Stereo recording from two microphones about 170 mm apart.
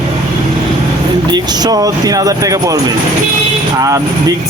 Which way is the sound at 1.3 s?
25° right (ahead or behind).